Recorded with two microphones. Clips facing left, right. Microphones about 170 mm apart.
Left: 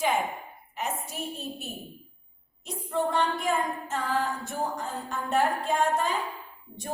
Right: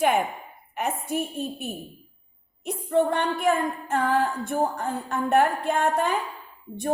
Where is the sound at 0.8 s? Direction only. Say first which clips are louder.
Right 6 dB; 55° right (ahead or behind).